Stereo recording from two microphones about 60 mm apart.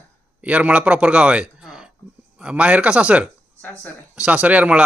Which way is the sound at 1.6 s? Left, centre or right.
Centre.